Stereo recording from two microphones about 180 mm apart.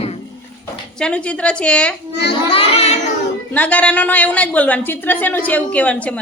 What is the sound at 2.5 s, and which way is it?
Child singing, 35° left (ahead or behind).